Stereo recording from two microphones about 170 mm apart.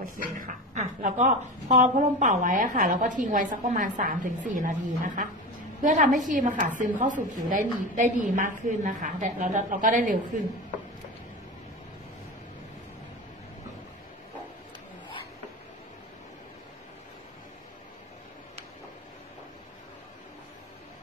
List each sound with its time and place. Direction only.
0.4 s a woman's voice: 45° right (ahead or behind)